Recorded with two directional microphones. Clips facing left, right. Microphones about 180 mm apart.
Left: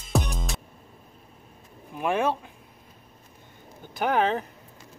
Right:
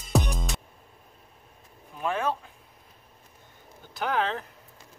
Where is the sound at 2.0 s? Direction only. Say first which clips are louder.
Left 4 dB; 15° left (ahead or behind).